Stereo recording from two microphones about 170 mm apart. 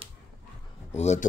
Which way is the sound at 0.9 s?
40° left (ahead or behind).